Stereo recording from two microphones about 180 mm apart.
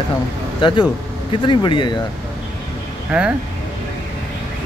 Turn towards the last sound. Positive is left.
turn(degrees=-5)  # may be behind; listen again after turning